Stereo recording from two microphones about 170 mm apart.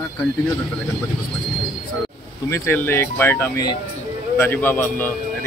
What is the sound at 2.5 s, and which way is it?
A man's voice, 15° left (ahead or behind).